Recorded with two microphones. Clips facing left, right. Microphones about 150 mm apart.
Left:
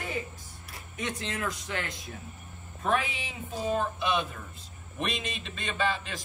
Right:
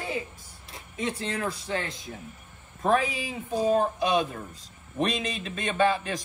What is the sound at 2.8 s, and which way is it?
A man's voice, 40° right (ahead or behind).